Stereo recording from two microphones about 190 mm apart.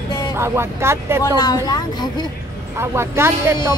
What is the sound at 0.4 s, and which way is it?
Speech, 15° right (ahead or behind).